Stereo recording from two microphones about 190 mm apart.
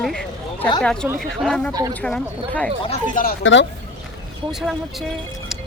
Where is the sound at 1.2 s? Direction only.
5° left (ahead or behind).